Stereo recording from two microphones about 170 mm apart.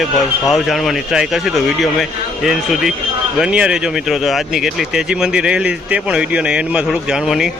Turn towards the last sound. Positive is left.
turn(degrees=0)  # may be behind; listen again after turning